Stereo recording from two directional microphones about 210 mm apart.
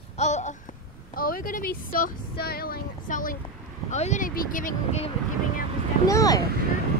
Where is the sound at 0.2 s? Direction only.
35° left (ahead or behind).